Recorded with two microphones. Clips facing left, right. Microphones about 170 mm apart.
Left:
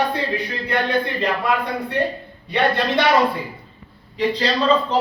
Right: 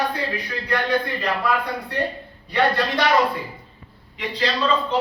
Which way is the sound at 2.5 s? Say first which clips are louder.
Left 1 dB; 25° left (ahead or behind).